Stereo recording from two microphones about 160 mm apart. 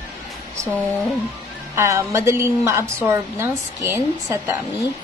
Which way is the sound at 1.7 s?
15° right (ahead or behind).